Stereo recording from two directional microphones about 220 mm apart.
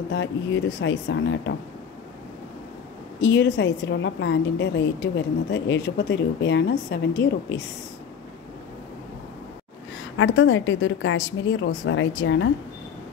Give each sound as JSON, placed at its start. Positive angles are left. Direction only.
{"t": 0.1, "sound": "a woman's voice", "side_deg": 55}
{"t": 3.2, "sound": "a woman's voice", "side_deg": 50}
{"t": 10.1, "sound": "a woman's voice", "side_deg": 60}